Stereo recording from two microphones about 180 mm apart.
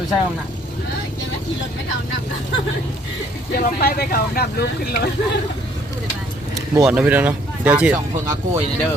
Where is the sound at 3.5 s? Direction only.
55° left (ahead or behind).